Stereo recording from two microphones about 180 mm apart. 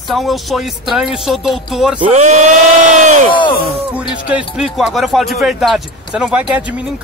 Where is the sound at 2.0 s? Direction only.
35° right (ahead or behind).